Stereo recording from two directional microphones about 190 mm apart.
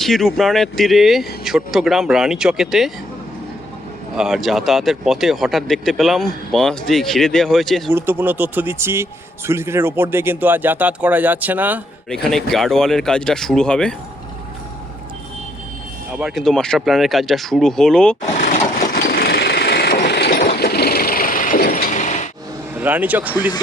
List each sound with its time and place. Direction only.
0.0 s speech: centre (ahead or behind)
4.2 s speech: centre (ahead or behind)
7.9 s speech: 10° right (ahead or behind)
12.1 s speech: centre (ahead or behind)
16.1 s speech: centre (ahead or behind)
18.8 s a sound: 50° left (ahead or behind)
22.7 s speech: 10° right (ahead or behind)